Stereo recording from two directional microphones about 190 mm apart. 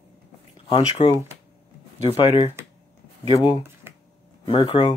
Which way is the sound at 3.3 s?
25° left (ahead or behind).